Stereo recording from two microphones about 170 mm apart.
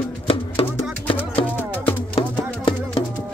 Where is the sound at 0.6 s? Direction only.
30° left (ahead or behind).